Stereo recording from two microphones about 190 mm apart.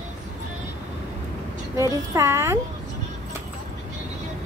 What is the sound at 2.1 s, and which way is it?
Speech, 15° right (ahead or behind).